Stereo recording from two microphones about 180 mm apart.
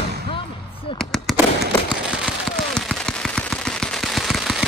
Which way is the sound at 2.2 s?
5° left (ahead or behind).